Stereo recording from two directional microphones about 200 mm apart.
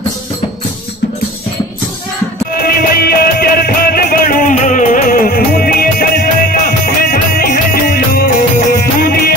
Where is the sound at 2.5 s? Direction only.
50° left (ahead or behind).